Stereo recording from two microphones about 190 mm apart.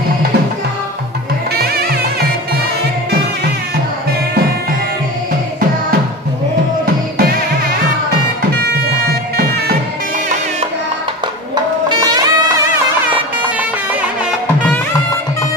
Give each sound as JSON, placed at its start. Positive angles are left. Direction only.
{"t": 1.6, "sound": "music", "side_deg": -55}
{"t": 11.9, "sound": "music", "side_deg": -20}